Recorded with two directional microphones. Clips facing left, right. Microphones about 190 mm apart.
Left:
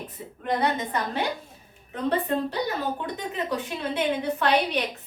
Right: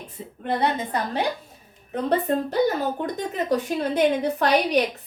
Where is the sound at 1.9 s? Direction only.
40° right (ahead or behind).